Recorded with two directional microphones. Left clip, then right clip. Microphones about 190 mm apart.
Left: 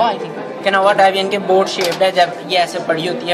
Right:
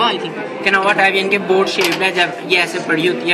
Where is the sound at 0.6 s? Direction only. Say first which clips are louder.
Left 2 dB; 45° left (ahead or behind).